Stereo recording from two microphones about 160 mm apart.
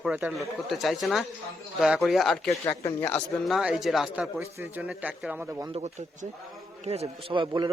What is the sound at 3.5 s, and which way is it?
A man's voice, 5° right (ahead or behind).